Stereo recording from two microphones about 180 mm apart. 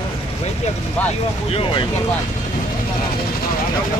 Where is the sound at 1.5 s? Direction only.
30° left (ahead or behind).